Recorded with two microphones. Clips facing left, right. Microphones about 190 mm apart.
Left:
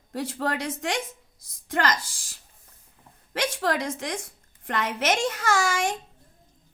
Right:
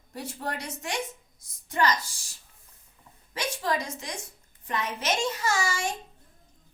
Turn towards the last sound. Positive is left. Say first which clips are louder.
# left 4 dB
turn(degrees=90)